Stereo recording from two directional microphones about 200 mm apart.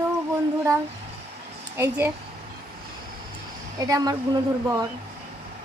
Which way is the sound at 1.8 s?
10° right (ahead or behind).